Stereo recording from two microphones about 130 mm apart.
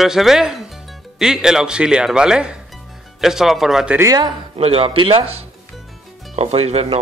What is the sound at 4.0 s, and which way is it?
Speech, 25° right (ahead or behind).